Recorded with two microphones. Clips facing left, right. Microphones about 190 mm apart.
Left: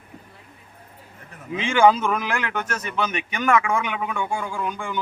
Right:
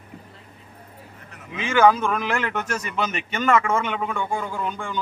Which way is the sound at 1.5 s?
25° left (ahead or behind).